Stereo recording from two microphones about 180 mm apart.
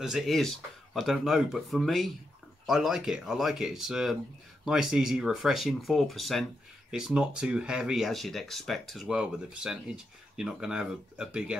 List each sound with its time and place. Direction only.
0.0 s speech: centre (ahead or behind)